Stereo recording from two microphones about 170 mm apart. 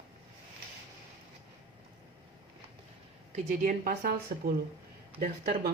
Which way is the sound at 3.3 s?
50° right (ahead or behind).